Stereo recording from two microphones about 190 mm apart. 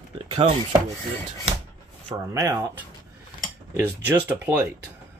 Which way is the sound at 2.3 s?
10° right (ahead or behind).